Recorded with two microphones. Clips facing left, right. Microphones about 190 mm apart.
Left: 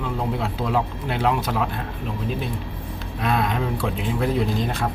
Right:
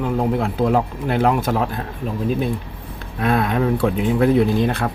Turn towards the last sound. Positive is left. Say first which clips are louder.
# right 6 dB
turn(degrees=-60)  # may be behind; listen again after turning